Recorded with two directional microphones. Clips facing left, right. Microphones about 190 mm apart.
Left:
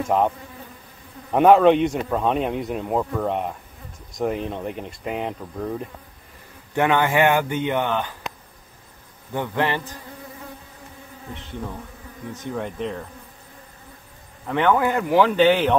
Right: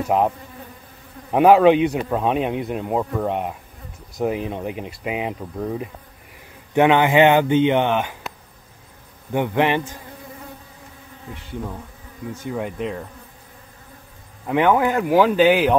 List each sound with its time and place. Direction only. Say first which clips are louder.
1.3 s speech: right 1 dB; 5° right (ahead or behind)
6.7 s speech: right 4 dB; 20° right (ahead or behind)
9.3 s speech: right 4 dB; 20° right (ahead or behind)
12.4 s speech: right 1 dB; 5° right (ahead or behind)
14.5 s speech: right 2 dB; 10° right (ahead or behind)